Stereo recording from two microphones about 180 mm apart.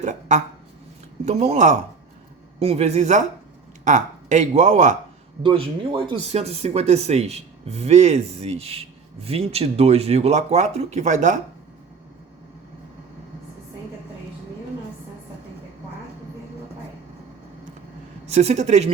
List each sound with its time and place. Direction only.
0.0 s speech: 40° right (ahead or behind)
5.4 s speech: 30° right (ahead or behind)
18.3 s speech: 40° right (ahead or behind)